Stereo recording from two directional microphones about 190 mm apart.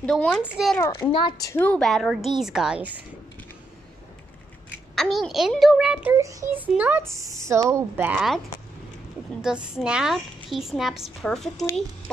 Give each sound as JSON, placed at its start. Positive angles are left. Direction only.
{"t": 0.0, "sound": "speech", "side_deg": 5}
{"t": 1.1, "sound": "a woman's voice", "side_deg": 20}
{"t": 1.6, "sound": "speech", "side_deg": 5}
{"t": 4.9, "sound": "speech", "side_deg": 0}
{"t": 6.1, "sound": "speech", "side_deg": -15}
{"t": 9.4, "sound": "speech", "side_deg": -5}